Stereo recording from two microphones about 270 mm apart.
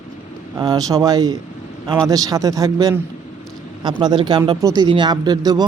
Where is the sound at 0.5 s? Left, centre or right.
Centre.